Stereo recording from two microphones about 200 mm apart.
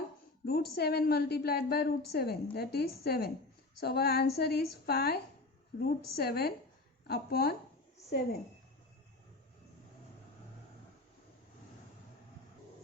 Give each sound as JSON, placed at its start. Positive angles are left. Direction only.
{"t": 0.4, "sound": "a woman's voice", "side_deg": 50}